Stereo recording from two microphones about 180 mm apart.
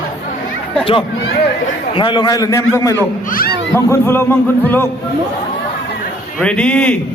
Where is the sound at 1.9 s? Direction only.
25° left (ahead or behind).